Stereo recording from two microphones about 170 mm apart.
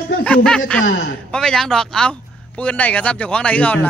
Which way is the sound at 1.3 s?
5° left (ahead or behind).